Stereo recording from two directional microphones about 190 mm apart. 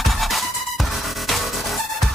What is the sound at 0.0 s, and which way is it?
Music, centre (ahead or behind).